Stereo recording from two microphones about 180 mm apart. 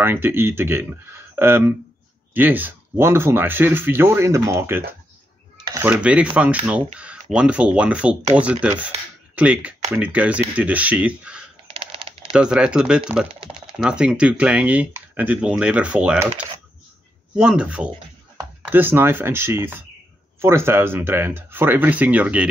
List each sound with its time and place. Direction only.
0.0 s speech: 10° right (ahead or behind)
11.6 s a sound: 30° right (ahead or behind)
12.3 s speech: 5° right (ahead or behind)